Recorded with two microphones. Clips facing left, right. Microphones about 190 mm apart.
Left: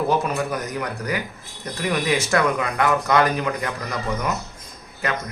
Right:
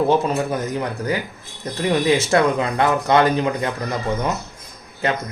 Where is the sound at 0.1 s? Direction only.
25° right (ahead or behind).